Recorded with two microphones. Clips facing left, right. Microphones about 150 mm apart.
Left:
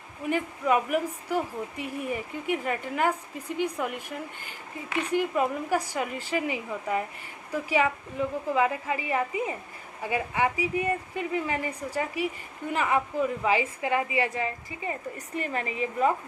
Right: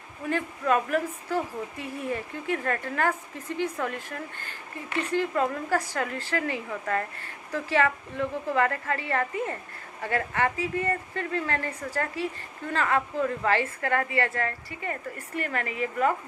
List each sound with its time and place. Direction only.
0.3 s a woman's voice: 15° left (ahead or behind)